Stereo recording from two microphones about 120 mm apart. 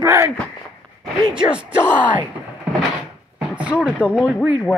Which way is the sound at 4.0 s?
10° right (ahead or behind).